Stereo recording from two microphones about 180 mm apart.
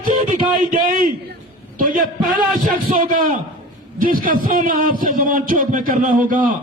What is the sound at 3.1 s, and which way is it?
A man's voice, 50° right (ahead or behind).